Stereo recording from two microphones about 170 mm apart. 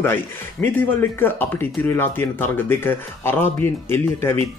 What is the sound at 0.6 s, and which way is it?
Speech, 10° left (ahead or behind).